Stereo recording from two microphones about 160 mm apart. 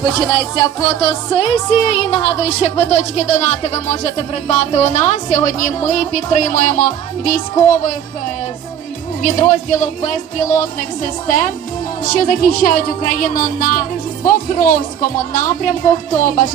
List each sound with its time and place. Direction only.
0.0 s music: 25° left (ahead or behind); by 7.4 s 55° left (ahead or behind)
9.2 s music: 50° left (ahead or behind)
11.3 s speech: 60° left (ahead or behind)
16.1 s music: 55° left (ahead or behind)